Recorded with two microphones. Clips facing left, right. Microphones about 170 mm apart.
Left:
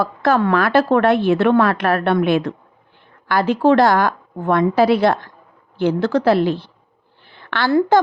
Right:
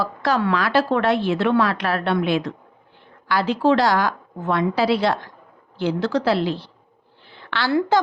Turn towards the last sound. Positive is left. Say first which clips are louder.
# left 4 dB
turn(degrees=55)  # may be behind; listen again after turning